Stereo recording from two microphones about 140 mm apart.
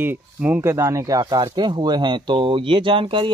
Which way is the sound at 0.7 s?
20° right (ahead or behind).